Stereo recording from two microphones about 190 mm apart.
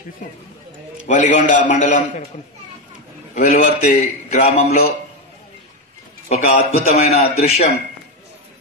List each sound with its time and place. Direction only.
0.2 s a man's voice: 45° left (ahead or behind)
3.3 s a man's voice: 40° left (ahead or behind)
6.2 s a man's voice: 45° left (ahead or behind)